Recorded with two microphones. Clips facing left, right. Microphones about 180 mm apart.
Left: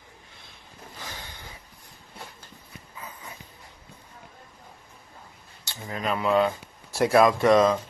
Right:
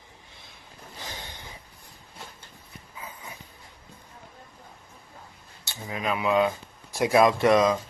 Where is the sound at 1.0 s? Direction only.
25° right (ahead or behind).